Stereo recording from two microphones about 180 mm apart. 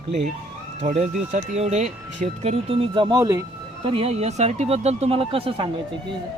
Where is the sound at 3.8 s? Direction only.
30° right (ahead or behind).